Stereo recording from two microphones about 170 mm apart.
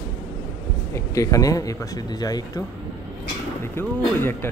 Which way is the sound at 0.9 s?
20° left (ahead or behind).